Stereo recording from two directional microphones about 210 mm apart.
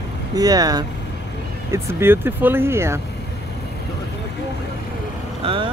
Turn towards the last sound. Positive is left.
turn(degrees=-25)  # may be behind; listen again after turning